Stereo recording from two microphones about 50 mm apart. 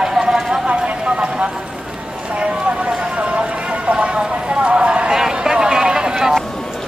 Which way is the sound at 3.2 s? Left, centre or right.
Right.